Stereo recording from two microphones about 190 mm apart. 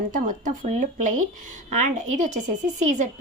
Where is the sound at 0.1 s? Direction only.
40° right (ahead or behind).